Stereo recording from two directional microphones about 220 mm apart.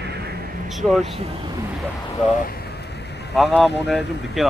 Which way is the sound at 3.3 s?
Centre (ahead or behind).